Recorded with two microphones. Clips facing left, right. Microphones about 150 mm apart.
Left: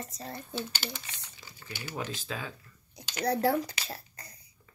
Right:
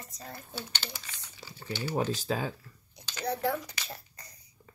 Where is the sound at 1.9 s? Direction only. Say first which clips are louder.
Right 7 dB; 40° right (ahead or behind).